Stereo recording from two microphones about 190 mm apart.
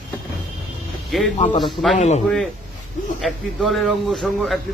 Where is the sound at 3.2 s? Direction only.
Centre (ahead or behind).